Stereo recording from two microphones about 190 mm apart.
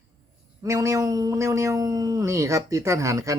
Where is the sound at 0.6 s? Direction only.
15° right (ahead or behind).